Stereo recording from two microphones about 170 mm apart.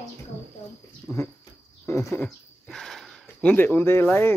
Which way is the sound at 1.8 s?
15° left (ahead or behind).